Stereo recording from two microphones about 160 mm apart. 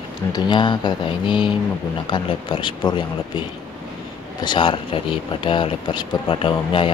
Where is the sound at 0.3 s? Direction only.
30° left (ahead or behind).